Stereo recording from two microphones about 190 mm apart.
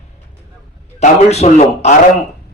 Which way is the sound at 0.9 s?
35° left (ahead or behind).